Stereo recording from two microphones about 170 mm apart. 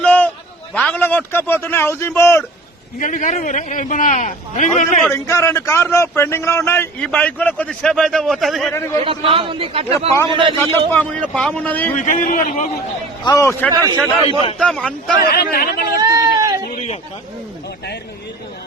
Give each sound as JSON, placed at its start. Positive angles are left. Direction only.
{"t": 0.0, "sound": "a sound", "side_deg": 10}
{"t": 0.7, "sound": "a man's voice", "side_deg": 10}
{"t": 3.0, "sound": "a man's voice", "side_deg": 50}
{"t": 5.1, "sound": "a man's voice", "side_deg": 15}
{"t": 9.0, "sound": "a man's voice", "side_deg": -30}
{"t": 10.6, "sound": "a man's voice", "side_deg": 10}
{"t": 11.9, "sound": "a man's voice", "side_deg": 50}
{"t": 13.2, "sound": "a man's voice", "side_deg": 20}
{"t": 13.7, "sound": "a man's voice", "side_deg": -20}
{"t": 14.6, "sound": "speech", "side_deg": 5}
{"t": 15.3, "sound": "speech", "side_deg": 60}
{"t": 16.0, "sound": "a sound", "side_deg": -20}
{"t": 16.7, "sound": "a sound", "side_deg": 45}